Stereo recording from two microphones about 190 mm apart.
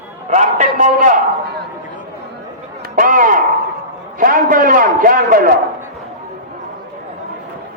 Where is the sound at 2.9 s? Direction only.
45° right (ahead or behind).